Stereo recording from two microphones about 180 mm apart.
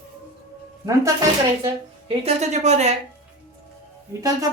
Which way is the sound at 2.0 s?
35° right (ahead or behind).